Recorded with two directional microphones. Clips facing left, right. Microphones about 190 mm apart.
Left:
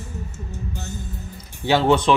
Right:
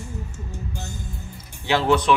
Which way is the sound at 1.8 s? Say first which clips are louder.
Left 1 dB; 30° left (ahead or behind).